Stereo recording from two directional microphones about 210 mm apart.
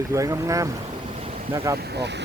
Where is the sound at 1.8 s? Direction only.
50° right (ahead or behind).